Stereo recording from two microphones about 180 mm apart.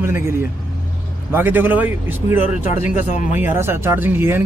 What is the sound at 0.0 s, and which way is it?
A man's voice, 15° right (ahead or behind).